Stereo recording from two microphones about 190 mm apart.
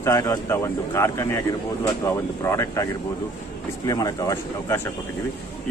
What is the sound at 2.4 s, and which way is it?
Speech, 15° left (ahead or behind).